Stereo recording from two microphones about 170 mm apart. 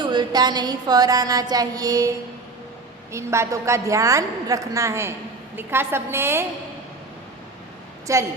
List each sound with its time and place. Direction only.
0.0 s a sound: 25° right (ahead or behind)
3.1 s a woman's voice: 15° right (ahead or behind)
8.1 s a woman's voice: 20° right (ahead or behind)